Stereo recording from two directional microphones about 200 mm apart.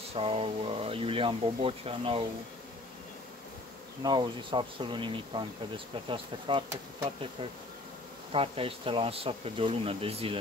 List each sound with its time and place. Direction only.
0.1 s speech: 30° right (ahead or behind)
4.0 s speech: 20° right (ahead or behind)
8.3 s speech: 30° right (ahead or behind)